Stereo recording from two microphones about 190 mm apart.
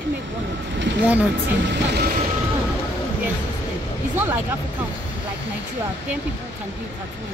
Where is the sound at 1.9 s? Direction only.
55° right (ahead or behind).